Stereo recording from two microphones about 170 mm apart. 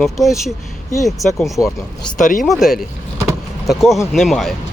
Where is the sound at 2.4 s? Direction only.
Centre (ahead or behind).